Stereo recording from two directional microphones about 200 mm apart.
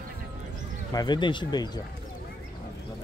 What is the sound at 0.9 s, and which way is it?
Speech, 20° left (ahead or behind).